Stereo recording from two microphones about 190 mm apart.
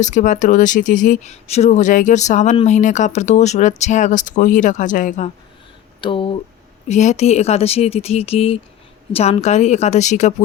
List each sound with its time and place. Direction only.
0.0 s speech: 40° left (ahead or behind)
6.0 s speech: 25° left (ahead or behind)